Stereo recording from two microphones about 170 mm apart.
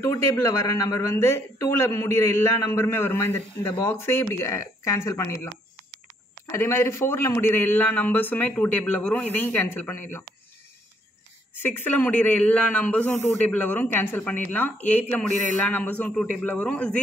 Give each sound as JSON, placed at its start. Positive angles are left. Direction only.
{"t": 0.0, "sound": "a man's voice", "side_deg": 20}
{"t": 6.5, "sound": "a man's voice", "side_deg": 15}
{"t": 11.5, "sound": "a man's voice", "side_deg": 10}